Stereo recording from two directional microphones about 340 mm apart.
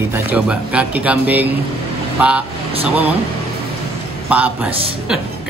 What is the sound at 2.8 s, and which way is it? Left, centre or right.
Speech, centre.